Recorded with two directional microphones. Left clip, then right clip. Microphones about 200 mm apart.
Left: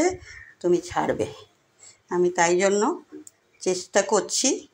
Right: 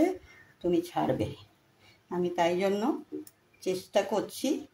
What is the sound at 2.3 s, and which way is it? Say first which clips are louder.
Speech: left 6 dB; 20° left (ahead or behind).